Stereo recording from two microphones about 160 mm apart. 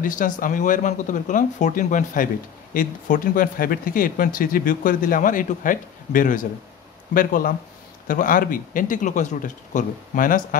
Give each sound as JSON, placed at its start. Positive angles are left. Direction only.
{"t": 0.0, "sound": "speech", "side_deg": 55}